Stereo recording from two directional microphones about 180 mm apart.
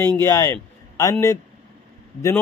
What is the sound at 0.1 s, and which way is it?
A man's voice, 15° left (ahead or behind).